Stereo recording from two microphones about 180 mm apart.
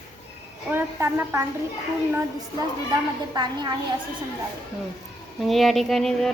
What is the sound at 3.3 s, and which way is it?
Speech, 25° right (ahead or behind).